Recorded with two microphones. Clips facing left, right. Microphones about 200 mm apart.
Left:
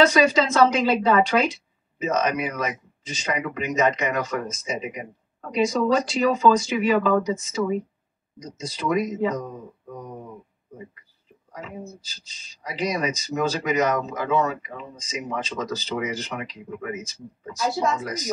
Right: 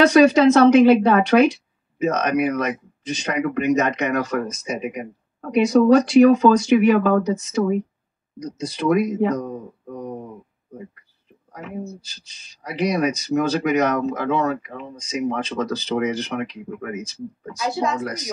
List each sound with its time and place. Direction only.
0.0 s speech: 65° right (ahead or behind)
11.5 s speech: 65° right (ahead or behind)